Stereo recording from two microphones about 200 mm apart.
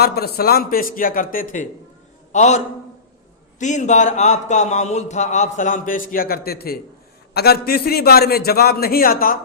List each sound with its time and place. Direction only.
0.0 s a man's voice: 50° left (ahead or behind); by 2.6 s 35° left (ahead or behind)
3.6 s a man's voice: 35° left (ahead or behind)